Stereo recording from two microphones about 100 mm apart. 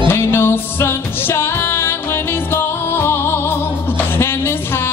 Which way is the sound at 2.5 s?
25° left (ahead or behind).